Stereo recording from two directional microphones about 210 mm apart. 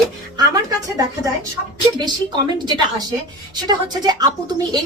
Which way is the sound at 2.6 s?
20° right (ahead or behind).